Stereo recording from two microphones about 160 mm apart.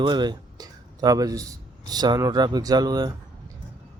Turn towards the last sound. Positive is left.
turn(degrees=-25)  # may be behind; listen again after turning